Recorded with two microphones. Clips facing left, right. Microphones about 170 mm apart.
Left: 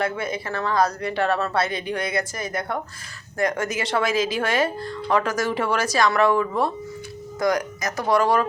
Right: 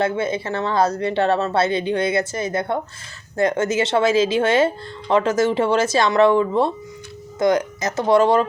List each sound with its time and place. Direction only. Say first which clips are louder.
0.0 s speech: right 5 dB; 25° right (ahead or behind)